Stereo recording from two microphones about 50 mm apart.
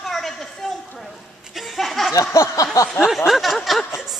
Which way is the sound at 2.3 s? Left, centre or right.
Left.